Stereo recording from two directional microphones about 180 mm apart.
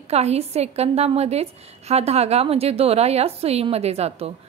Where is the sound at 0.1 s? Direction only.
35° right (ahead or behind).